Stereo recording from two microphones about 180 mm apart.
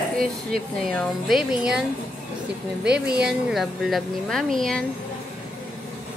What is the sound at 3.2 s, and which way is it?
Speech, centre (ahead or behind).